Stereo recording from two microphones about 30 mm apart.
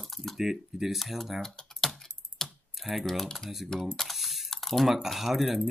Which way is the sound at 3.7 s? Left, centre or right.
Left.